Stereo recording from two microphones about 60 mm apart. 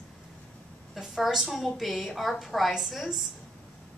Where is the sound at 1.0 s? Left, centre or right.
Centre.